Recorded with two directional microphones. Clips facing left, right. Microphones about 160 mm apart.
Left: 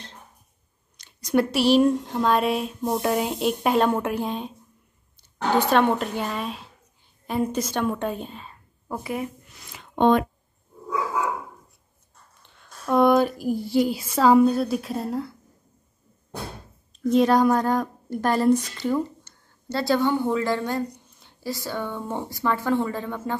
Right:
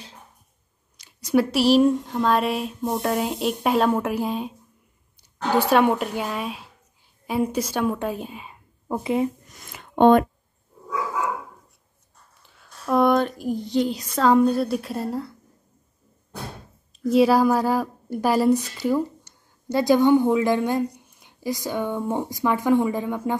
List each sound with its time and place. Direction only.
0.9 s speech: 5° right (ahead or behind)
5.6 s a woman's voice: 10° right (ahead or behind)
9.5 s a sound: 50° right (ahead or behind)
12.4 s speech: 5° right (ahead or behind)
17.1 s a woman's voice: 5° right (ahead or behind)